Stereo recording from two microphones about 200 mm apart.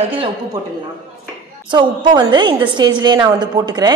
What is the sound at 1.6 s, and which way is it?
A woman's voice, 25° right (ahead or behind).